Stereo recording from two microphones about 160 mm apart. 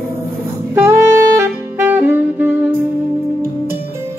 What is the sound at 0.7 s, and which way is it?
Saxophone, 15° right (ahead or behind).